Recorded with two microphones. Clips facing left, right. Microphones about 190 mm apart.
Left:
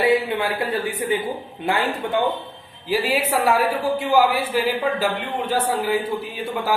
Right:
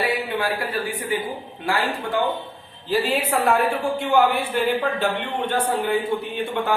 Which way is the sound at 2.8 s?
10° left (ahead or behind).